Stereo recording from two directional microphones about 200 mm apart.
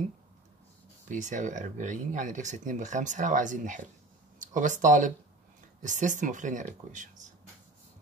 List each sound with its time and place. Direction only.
1.0 s speech: 40° right (ahead or behind)